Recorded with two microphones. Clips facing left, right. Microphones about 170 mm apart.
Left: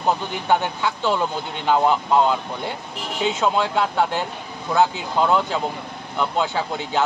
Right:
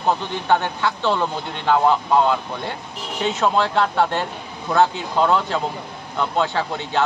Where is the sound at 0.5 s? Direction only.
15° left (ahead or behind).